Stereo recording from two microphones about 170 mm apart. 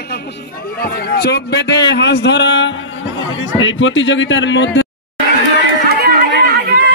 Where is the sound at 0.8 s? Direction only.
70° left (ahead or behind); by 4.8 s 90° left.